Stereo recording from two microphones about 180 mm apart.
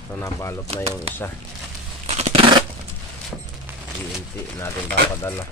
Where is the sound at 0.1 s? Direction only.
15° left (ahead or behind).